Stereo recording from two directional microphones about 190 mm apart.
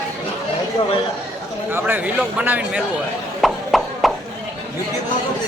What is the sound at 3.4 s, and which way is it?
Clip-clop, centre (ahead or behind).